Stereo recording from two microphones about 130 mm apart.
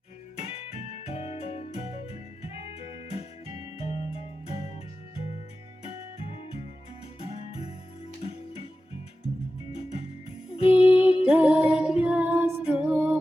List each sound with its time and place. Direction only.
0.3 s music: 50° left (ahead or behind)
9.7 s music: 55° left (ahead or behind)
11.3 s music: 10° right (ahead or behind)